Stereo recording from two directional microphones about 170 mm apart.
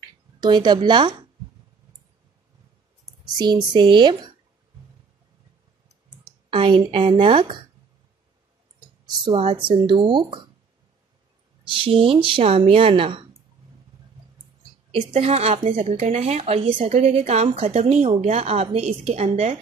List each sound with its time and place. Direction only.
0.4 s speech: 25° right (ahead or behind)
3.3 s speech: 25° right (ahead or behind)
6.5 s speech: 30° right (ahead or behind)
9.0 s speech: 25° right (ahead or behind)
11.6 s speech: 30° right (ahead or behind)
14.9 s speech: 35° right (ahead or behind)